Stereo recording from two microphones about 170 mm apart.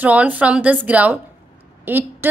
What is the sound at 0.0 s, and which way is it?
A woman's voice, 10° right (ahead or behind).